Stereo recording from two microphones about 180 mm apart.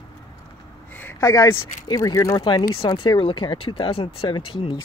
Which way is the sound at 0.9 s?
15° left (ahead or behind).